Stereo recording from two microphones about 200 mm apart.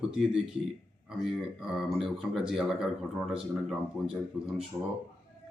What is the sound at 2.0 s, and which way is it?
Speech, centre (ahead or behind).